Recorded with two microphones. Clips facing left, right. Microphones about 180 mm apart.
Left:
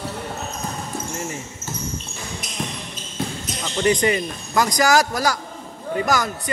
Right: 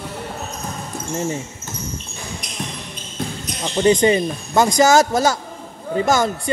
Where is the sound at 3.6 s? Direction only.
25° right (ahead or behind).